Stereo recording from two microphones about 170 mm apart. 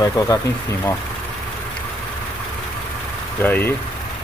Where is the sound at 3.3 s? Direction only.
10° left (ahead or behind).